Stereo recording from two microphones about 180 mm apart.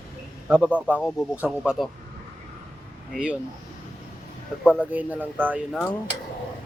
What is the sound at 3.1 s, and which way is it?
Speech, 5° right (ahead or behind).